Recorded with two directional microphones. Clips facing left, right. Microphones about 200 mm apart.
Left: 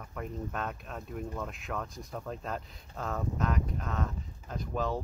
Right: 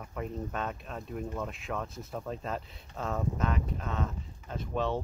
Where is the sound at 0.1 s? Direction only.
Centre (ahead or behind).